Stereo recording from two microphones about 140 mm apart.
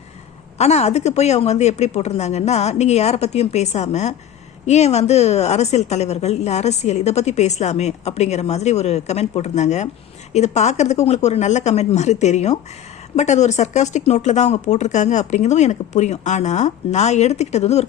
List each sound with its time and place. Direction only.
0.6 s a woman's voice: 50° left (ahead or behind)